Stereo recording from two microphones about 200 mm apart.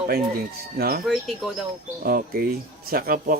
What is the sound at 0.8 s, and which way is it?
Speech, 50° right (ahead or behind).